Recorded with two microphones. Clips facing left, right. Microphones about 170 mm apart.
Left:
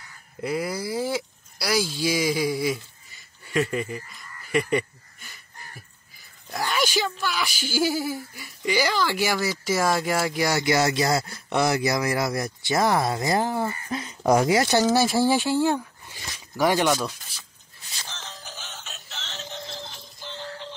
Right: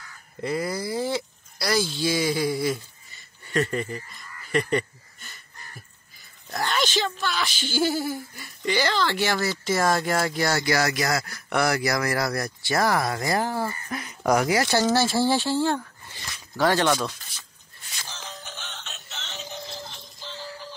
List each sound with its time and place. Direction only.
0.4 s speech: 5° left (ahead or behind)
4.5 s a sound: 5° left (ahead or behind)
6.5 s speech: 10° left (ahead or behind)
18.0 s music: 5° right (ahead or behind)
18.5 s synthetic singing: 5° left (ahead or behind)
20.2 s music: 20° left (ahead or behind)